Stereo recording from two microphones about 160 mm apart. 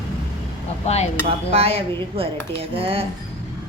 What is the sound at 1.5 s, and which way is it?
A woman's voice, 35° right (ahead or behind).